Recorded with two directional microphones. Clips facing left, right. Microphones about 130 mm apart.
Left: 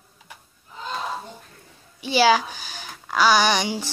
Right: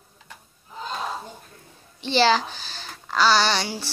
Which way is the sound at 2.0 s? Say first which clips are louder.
Left 2 dB; 10° left (ahead or behind).